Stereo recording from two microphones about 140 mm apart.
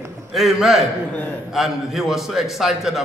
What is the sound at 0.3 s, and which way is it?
A man's voice, centre (ahead or behind).